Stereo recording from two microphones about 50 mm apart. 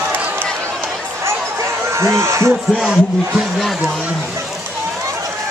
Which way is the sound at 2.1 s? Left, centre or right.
Right.